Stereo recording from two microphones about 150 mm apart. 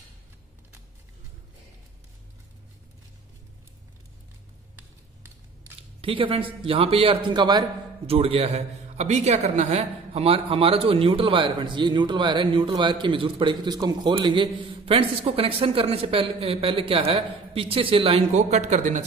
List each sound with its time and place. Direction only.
5.9 s a man's voice: 35° right (ahead or behind)
8.1 s a man's voice: 40° right (ahead or behind)